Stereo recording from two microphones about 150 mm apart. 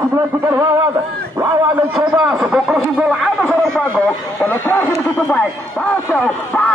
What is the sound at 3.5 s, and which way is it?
Speech, 10° left (ahead or behind).